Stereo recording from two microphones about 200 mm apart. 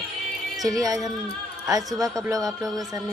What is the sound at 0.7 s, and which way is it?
Speech, 15° right (ahead or behind).